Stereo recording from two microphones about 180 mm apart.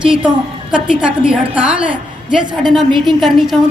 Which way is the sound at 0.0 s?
5° right (ahead or behind).